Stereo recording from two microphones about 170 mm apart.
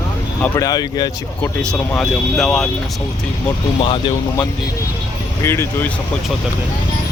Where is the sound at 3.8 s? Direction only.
30° left (ahead or behind).